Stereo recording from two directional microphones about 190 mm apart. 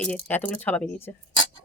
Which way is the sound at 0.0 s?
10° left (ahead or behind).